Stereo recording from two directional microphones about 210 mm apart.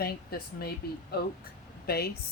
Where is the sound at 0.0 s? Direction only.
45° left (ahead or behind).